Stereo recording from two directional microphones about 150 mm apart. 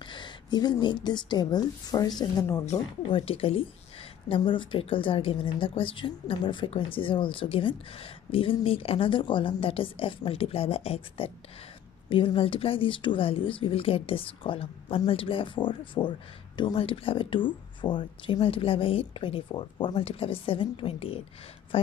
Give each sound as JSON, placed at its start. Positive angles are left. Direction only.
{"t": 0.0, "sound": "a woman's voice", "side_deg": 30}